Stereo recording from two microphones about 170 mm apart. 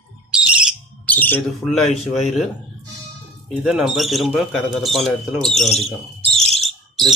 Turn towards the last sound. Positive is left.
turn(degrees=0)  # may be behind; listen again after turning